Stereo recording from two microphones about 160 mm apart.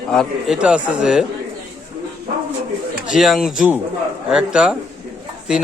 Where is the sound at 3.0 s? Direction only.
Centre (ahead or behind).